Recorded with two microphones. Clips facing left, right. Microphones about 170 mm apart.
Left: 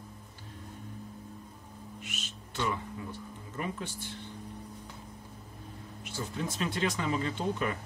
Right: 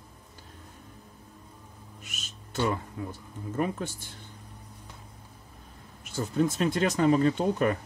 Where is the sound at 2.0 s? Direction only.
45° right (ahead or behind).